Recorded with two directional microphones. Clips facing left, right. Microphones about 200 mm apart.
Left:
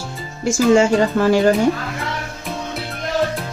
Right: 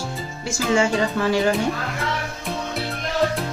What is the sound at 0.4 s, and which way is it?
Speech, 45° left (ahead or behind).